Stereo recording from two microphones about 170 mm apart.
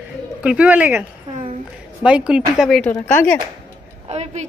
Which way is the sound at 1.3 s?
30° right (ahead or behind).